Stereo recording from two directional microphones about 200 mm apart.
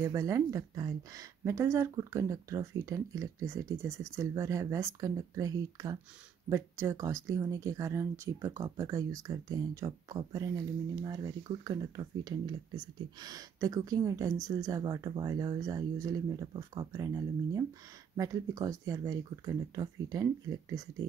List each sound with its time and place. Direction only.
0.0 s speech: 15° right (ahead or behind)